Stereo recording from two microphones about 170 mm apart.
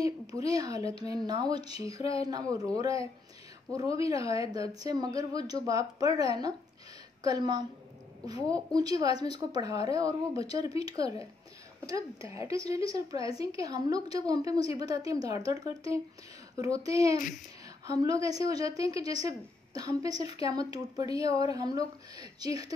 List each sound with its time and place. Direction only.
0.0 s a woman's voice: 20° right (ahead or behind)